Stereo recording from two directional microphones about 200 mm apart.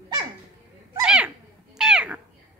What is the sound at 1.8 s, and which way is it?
Cat, 5° right (ahead or behind).